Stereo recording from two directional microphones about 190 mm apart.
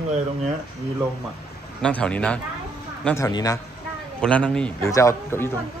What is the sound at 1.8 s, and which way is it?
A man's voice, 5° left (ahead or behind).